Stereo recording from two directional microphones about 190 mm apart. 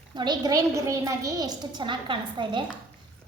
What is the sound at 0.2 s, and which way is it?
A woman's voice, 20° right (ahead or behind).